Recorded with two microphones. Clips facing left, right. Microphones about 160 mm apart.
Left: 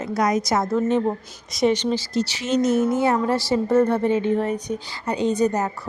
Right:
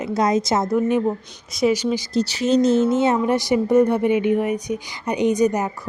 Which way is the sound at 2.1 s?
30° right (ahead or behind).